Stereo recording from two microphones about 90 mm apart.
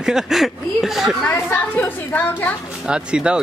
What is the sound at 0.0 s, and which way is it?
Speech, 5° right (ahead or behind).